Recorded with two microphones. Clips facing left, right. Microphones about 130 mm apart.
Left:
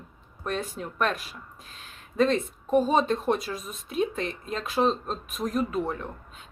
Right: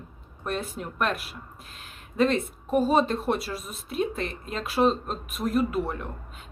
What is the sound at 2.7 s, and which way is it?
Speech, 5° right (ahead or behind).